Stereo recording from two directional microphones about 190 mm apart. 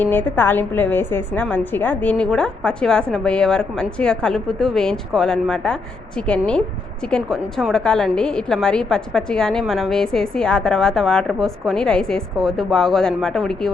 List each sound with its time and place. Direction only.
0.0 s a woman's voice: 10° left (ahead or behind)